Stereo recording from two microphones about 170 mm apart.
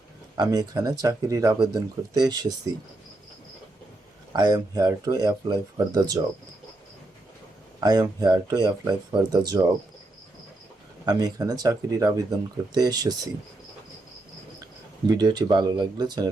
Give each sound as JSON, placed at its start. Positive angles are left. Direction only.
{"t": 0.3, "sound": "speech", "side_deg": -25}
{"t": 4.3, "sound": "speech", "side_deg": -25}
{"t": 7.8, "sound": "speech", "side_deg": -25}
{"t": 11.0, "sound": "speech", "side_deg": -25}
{"t": 15.1, "sound": "speech", "side_deg": -25}